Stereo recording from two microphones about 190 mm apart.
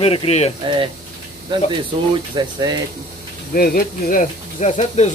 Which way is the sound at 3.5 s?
50° left (ahead or behind).